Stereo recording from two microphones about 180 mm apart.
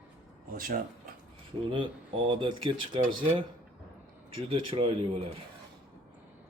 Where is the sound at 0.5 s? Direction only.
50° right (ahead or behind).